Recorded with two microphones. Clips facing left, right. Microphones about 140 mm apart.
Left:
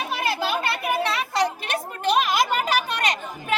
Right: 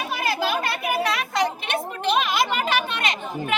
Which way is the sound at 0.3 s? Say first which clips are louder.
Right 1 dB; centre (ahead or behind).